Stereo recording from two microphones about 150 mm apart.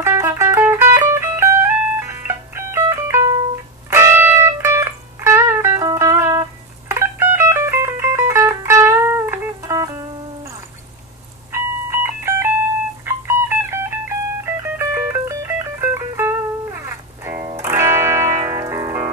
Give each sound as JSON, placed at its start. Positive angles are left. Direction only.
{"t": 0.0, "sound": "music", "side_deg": -20}
{"t": 11.5, "sound": "a sound", "side_deg": -20}
{"t": 13.0, "sound": "music", "side_deg": -20}